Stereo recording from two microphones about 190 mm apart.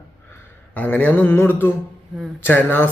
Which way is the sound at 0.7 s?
10° left (ahead or behind).